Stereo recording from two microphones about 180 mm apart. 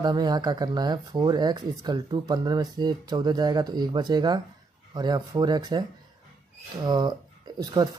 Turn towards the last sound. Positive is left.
turn(degrees=-25)  # may be behind; listen again after turning